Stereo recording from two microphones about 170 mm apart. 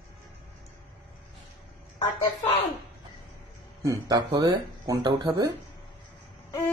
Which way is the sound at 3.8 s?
20° right (ahead or behind).